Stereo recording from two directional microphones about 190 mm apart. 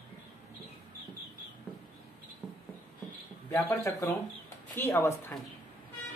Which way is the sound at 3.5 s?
15° left (ahead or behind).